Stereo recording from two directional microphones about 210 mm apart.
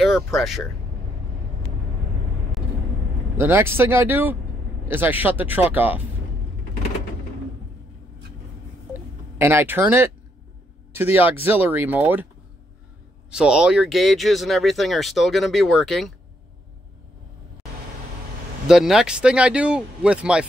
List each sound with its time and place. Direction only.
0.0 s speech: centre (ahead or behind)
3.3 s speech: 10° right (ahead or behind)
9.4 s speech: 10° right (ahead or behind)
13.3 s speech: 5° right (ahead or behind)
18.7 s speech: centre (ahead or behind)